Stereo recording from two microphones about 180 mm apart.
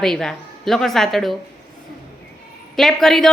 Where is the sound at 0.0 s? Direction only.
5° left (ahead or behind).